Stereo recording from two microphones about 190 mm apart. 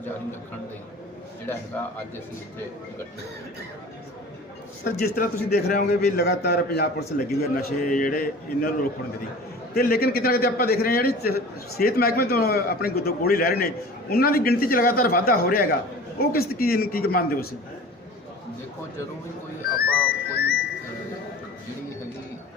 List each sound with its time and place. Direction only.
4.8 s a man's voice: 55° left (ahead or behind)
7.5 s a man's voice: 45° left (ahead or behind)
19.7 s music: 50° left (ahead or behind)